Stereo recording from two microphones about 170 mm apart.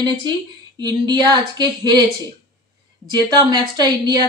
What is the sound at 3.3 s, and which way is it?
Speech, 25° right (ahead or behind).